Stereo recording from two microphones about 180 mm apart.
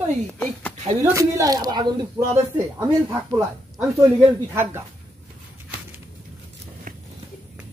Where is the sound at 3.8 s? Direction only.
15° right (ahead or behind).